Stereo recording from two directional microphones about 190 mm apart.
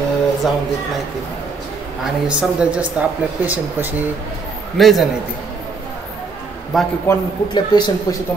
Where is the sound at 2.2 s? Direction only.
5° right (ahead or behind).